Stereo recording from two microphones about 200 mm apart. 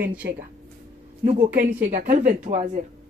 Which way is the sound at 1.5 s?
40° right (ahead or behind).